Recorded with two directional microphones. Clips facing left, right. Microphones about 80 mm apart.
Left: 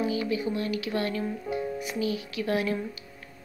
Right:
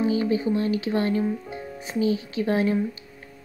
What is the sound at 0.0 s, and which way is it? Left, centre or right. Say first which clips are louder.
A woman's voice: right 5 dB; right.